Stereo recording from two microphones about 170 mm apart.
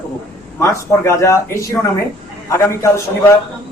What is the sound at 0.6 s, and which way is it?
Speech, 15° left (ahead or behind).